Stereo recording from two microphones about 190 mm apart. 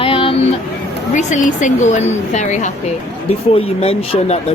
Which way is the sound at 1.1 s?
40° left (ahead or behind).